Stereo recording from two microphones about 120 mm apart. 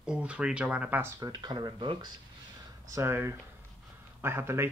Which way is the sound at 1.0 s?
30° right (ahead or behind).